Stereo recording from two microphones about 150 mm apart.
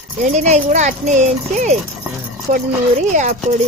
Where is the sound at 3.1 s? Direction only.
55° right (ahead or behind).